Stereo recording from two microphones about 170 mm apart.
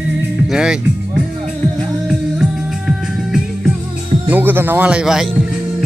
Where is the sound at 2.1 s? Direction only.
5° right (ahead or behind).